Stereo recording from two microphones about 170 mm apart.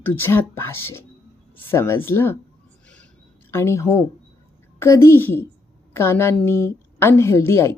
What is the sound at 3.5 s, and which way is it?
A woman's voice, 15° left (ahead or behind).